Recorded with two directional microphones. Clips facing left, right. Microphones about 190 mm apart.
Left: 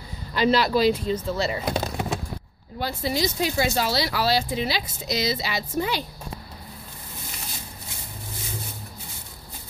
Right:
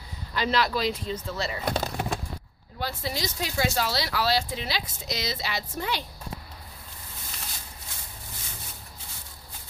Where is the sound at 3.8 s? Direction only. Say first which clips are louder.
Left 3 dB; 10° left (ahead or behind).